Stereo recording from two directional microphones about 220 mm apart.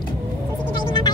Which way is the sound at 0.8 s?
20° left (ahead or behind).